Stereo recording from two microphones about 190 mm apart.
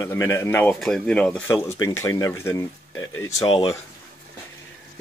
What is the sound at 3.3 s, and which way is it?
Speech, 30° left (ahead or behind).